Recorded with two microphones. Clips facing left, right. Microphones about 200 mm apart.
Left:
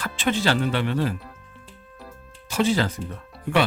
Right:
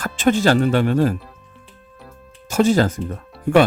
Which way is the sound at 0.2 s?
45° right (ahead or behind).